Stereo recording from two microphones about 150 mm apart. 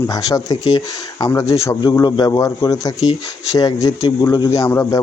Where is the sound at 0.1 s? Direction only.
25° left (ahead or behind).